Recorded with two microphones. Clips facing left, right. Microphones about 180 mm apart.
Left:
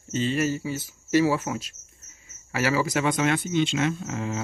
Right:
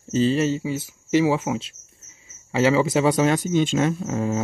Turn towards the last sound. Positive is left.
turn(degrees=-40)  # may be behind; listen again after turning